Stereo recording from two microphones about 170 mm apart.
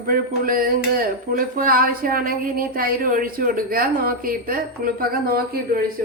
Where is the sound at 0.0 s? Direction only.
55° right (ahead or behind).